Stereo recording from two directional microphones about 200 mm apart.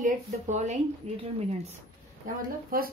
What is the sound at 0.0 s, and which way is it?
A woman's voice, 35° right (ahead or behind).